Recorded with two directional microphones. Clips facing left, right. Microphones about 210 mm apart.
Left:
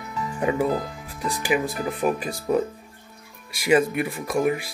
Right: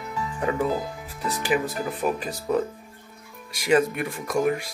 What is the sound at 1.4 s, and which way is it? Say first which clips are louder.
Speech: left 1 dB; 10° left (ahead or behind).